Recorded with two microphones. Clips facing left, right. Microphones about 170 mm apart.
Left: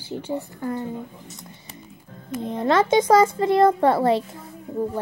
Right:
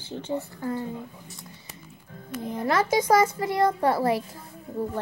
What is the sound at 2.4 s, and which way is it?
A child's voice, 25° left (ahead or behind).